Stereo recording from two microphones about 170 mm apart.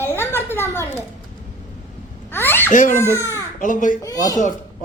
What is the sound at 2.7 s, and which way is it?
A child's voice, 50° left (ahead or behind).